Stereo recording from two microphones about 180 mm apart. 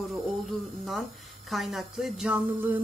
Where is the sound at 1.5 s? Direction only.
Centre (ahead or behind).